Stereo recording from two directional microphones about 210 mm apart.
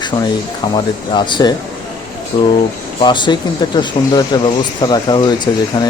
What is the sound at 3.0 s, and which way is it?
Speech, 20° left (ahead or behind).